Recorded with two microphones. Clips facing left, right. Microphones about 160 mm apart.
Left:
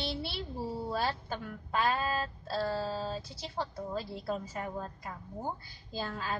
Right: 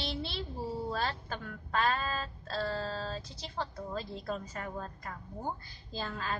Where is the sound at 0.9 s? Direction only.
10° left (ahead or behind).